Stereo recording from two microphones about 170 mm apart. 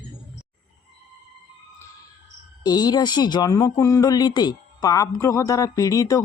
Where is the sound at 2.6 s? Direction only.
25° left (ahead or behind).